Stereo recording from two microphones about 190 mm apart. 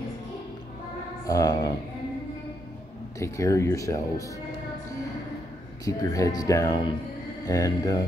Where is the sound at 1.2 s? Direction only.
20° left (ahead or behind).